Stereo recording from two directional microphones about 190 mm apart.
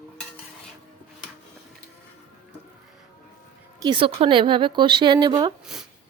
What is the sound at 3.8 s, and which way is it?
A woman's voice, 25° right (ahead or behind).